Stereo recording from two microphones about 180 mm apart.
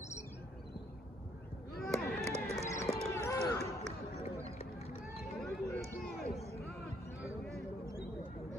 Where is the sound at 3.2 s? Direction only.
15° left (ahead or behind).